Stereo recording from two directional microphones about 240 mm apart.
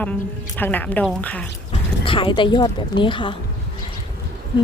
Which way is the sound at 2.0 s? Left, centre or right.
Left.